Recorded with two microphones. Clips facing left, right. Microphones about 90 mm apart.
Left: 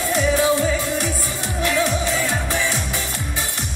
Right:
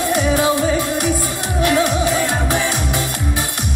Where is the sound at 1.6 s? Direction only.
65° right (ahead or behind).